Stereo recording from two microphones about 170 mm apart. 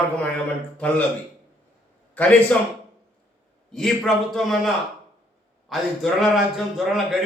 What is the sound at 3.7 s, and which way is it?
A man's voice, centre (ahead or behind).